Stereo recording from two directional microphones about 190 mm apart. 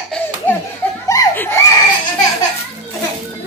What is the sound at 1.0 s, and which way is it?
Crying, 15° left (ahead or behind).